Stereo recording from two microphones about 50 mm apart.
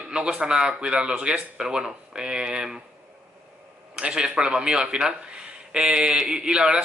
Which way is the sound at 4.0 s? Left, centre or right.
Centre.